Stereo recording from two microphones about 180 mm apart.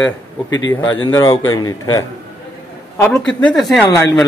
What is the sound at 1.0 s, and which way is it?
Speech, 20° left (ahead or behind).